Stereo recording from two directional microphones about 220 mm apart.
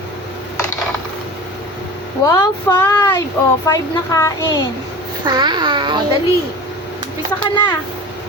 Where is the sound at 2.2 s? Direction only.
15° left (ahead or behind).